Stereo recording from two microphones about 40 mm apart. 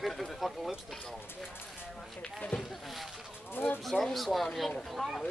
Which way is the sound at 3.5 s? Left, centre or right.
Left.